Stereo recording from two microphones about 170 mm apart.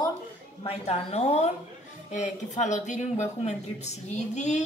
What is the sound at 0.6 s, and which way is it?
A woman's voice, 35° left (ahead or behind).